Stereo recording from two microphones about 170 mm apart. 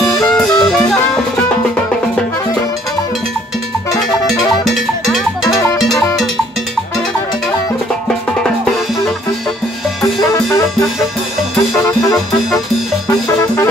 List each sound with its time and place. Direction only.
0.1 s music: centre (ahead or behind)
4.3 s music: centre (ahead or behind)
5.4 s music: 20° left (ahead or behind)
11.7 s music: centre (ahead or behind)